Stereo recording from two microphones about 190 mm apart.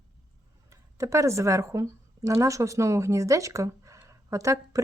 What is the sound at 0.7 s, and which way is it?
Speech, 15° right (ahead or behind).